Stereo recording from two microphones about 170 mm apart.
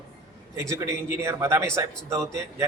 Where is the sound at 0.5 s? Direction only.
15° right (ahead or behind).